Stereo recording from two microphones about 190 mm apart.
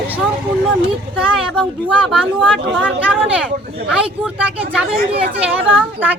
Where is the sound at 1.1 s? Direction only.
Centre (ahead or behind).